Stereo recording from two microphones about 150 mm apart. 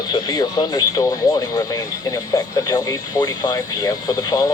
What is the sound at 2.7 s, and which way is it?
Speech, 25° left (ahead or behind).